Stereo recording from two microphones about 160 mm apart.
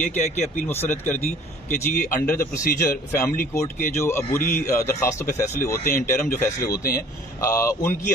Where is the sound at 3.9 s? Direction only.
15° left (ahead or behind).